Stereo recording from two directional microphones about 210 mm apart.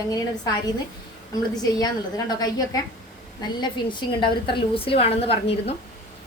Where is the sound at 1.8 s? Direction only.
20° left (ahead or behind).